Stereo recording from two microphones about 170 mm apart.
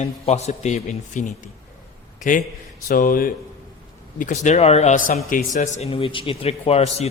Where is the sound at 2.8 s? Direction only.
55° left (ahead or behind).